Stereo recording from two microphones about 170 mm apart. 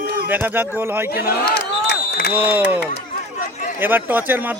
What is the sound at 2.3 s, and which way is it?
A man's voice, 10° right (ahead or behind).